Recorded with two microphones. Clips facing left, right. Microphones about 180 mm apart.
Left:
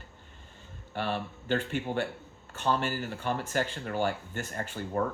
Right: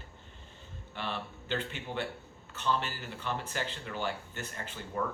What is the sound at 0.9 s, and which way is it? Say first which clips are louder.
Speech: left 6 dB; 45° left (ahead or behind).